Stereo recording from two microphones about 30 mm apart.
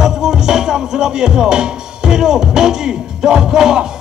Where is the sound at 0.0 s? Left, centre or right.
Right.